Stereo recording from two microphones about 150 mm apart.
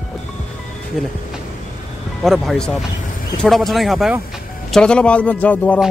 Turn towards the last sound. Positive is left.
turn(degrees=10)  # may be behind; listen again after turning